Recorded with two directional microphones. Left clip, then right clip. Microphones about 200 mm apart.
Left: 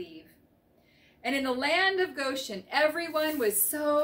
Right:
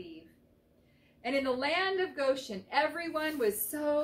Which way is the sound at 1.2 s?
15° left (ahead or behind).